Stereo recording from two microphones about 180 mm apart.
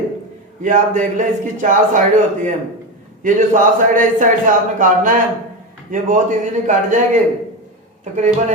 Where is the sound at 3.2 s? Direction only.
45° right (ahead or behind).